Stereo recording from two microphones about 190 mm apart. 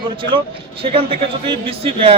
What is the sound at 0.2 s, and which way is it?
A man's voice, 25° right (ahead or behind).